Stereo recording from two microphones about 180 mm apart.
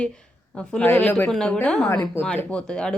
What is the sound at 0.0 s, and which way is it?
A woman's voice, 5° left (ahead or behind).